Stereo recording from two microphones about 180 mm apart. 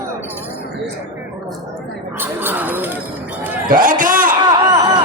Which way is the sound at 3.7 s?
50° right (ahead or behind).